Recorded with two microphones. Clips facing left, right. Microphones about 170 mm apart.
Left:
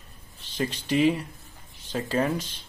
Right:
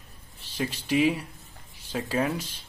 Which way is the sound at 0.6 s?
5° right (ahead or behind).